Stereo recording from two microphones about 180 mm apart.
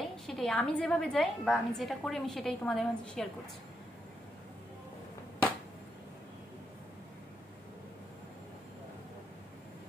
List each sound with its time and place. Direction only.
0.3 s a woman's voice: 5° left (ahead or behind)